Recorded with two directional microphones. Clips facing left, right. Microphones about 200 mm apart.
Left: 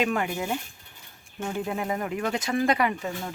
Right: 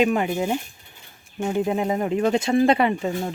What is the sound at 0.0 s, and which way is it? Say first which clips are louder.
Speech: right 6 dB; 20° right (ahead or behind).